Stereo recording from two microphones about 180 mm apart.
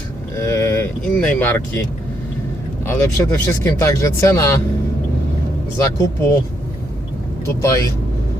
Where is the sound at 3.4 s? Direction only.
15° left (ahead or behind).